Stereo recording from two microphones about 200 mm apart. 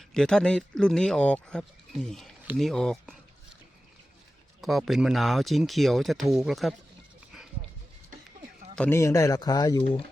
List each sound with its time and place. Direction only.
0.1 s speech: 5° left (ahead or behind)
4.6 s speech: centre (ahead or behind)
7.3 s music: centre (ahead or behind)
8.7 s speech: 10° left (ahead or behind)